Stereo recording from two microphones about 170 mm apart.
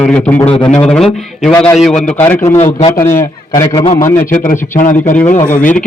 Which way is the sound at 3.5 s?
25° left (ahead or behind).